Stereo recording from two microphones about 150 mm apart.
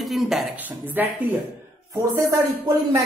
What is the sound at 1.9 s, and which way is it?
Speech, 25° right (ahead or behind).